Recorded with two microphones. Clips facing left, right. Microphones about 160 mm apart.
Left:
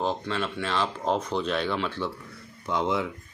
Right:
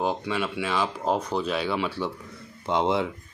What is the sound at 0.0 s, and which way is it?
Speech, 10° right (ahead or behind).